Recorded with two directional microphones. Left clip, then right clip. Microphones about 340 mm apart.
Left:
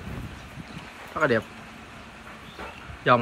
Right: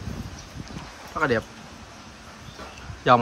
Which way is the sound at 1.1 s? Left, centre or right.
Centre.